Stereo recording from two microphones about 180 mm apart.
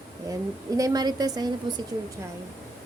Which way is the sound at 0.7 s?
20° right (ahead or behind).